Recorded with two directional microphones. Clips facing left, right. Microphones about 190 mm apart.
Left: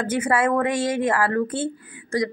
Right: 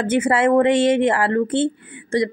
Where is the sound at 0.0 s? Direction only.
25° right (ahead or behind).